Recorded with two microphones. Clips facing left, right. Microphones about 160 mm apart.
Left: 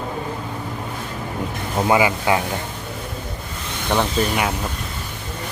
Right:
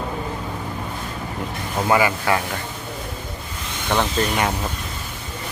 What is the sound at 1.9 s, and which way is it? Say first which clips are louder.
Speech: left 1 dB; 15° left (ahead or behind).